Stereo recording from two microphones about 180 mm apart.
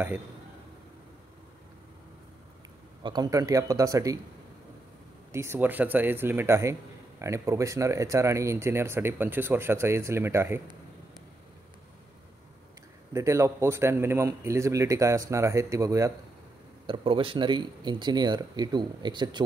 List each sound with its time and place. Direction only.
3.0 s speech: 25° right (ahead or behind)
5.3 s a man's voice: 15° right (ahead or behind)
13.1 s a man's voice: 15° right (ahead or behind)
16.8 s speech: 30° right (ahead or behind)